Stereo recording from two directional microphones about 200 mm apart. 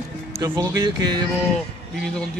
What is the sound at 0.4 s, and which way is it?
Speech, 20° right (ahead or behind).